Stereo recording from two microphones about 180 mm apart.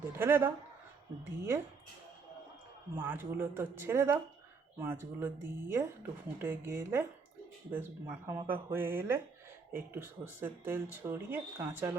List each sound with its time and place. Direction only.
0.2 s speech: 10° right (ahead or behind)
2.9 s speech: 10° right (ahead or behind)